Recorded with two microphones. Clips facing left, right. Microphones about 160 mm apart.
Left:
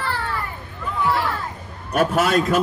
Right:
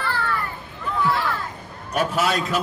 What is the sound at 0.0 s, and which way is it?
Children playing, 30° left (ahead or behind).